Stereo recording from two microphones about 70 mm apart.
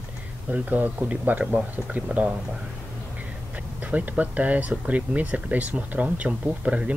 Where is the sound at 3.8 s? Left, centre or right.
Right.